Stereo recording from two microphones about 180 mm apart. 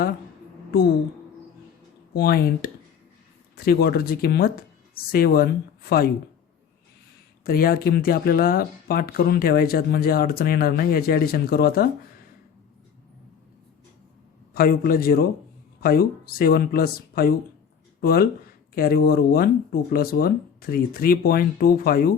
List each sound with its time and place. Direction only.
2.1 s speech: 60° left (ahead or behind)
7.4 s speech: 55° left (ahead or behind)
14.5 s speech: 55° left (ahead or behind)